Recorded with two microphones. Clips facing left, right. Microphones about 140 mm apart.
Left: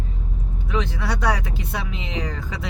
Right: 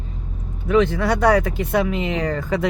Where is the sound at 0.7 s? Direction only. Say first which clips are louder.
Right 9 dB; 55° right (ahead or behind).